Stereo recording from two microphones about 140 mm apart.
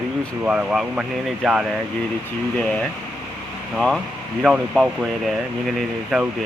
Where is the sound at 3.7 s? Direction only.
Centre (ahead or behind).